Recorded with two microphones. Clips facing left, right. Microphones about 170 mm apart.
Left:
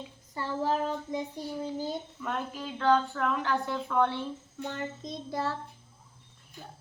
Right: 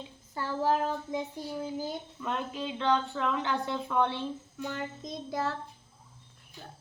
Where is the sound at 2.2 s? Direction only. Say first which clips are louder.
Right 2 dB; 20° right (ahead or behind).